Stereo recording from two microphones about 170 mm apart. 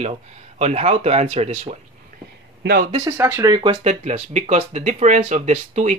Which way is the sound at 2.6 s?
65° right (ahead or behind).